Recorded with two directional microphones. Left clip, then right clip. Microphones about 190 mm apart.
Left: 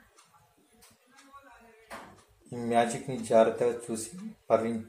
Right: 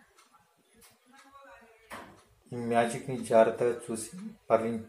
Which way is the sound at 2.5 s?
Centre (ahead or behind).